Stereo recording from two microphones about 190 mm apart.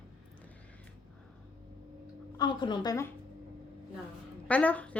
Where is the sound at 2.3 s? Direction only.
25° left (ahead or behind).